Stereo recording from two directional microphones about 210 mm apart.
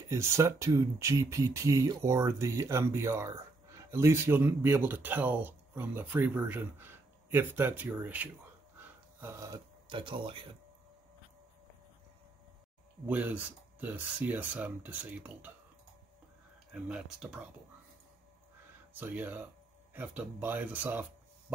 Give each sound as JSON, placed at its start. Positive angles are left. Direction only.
{"t": 0.0, "sound": "speech", "side_deg": -15}
{"t": 8.7, "sound": "a sound", "side_deg": -10}
{"t": 13.0, "sound": "speech", "side_deg": -10}
{"t": 16.7, "sound": "speech", "side_deg": -5}
{"t": 18.9, "sound": "speech", "side_deg": -10}